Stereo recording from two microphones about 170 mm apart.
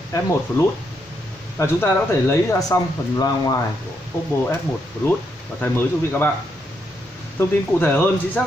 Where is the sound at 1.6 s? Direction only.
15° left (ahead or behind).